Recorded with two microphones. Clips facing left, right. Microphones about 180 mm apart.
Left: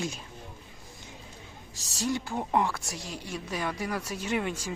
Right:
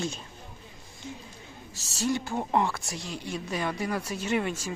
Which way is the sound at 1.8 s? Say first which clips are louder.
Right 2 dB; 15° left (ahead or behind).